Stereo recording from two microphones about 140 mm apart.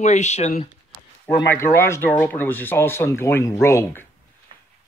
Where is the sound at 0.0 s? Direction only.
55° left (ahead or behind).